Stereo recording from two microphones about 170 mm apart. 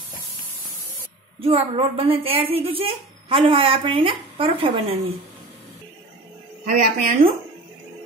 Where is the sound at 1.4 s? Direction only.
35° right (ahead or behind).